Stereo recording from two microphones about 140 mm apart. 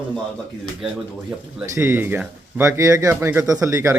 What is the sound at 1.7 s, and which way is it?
Speech, 20° right (ahead or behind).